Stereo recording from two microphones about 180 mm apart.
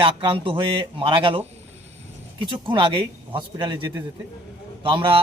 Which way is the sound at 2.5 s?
30° right (ahead or behind).